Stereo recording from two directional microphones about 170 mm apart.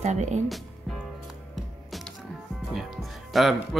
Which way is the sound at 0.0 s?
45° right (ahead or behind).